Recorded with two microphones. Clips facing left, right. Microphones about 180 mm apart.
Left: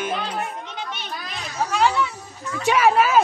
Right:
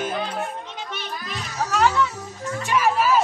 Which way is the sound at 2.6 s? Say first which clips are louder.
Left 3 dB; 80° left.